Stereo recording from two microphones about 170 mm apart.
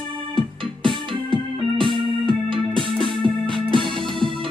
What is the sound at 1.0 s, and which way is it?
Music, 30° right (ahead or behind).